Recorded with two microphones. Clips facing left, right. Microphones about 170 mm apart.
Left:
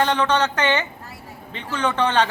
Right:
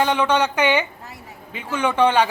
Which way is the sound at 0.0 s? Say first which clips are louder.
Right 1 dB; 10° right (ahead or behind).